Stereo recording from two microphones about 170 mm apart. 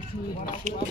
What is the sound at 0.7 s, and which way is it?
Speech, 50° right (ahead or behind).